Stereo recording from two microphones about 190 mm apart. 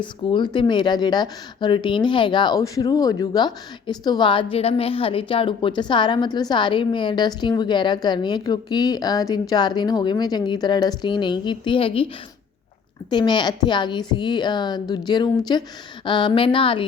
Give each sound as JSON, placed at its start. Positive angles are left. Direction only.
{"t": 0.0, "sound": "a woman's voice", "side_deg": 25}
{"t": 13.1, "sound": "a woman's voice", "side_deg": 25}